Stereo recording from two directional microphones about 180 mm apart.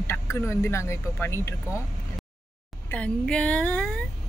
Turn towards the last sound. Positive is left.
turn(degrees=5)  # may be behind; listen again after turning